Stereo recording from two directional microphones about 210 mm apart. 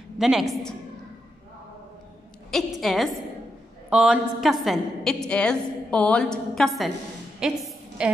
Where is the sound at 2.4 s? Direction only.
Centre (ahead or behind).